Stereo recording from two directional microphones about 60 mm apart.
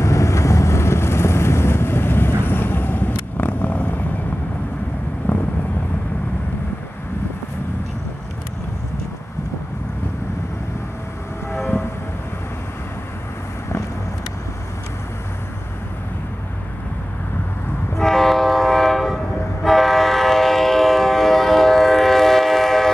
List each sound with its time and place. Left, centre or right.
0.0 s vehicle: left
5.3 s vehicle: left
11.5 s train: left
17.9 s train: centre